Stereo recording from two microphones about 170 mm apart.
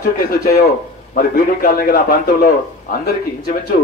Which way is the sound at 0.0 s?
60° left (ahead or behind).